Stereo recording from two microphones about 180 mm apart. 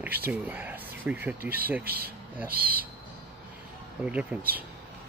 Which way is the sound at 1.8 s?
60° right (ahead or behind).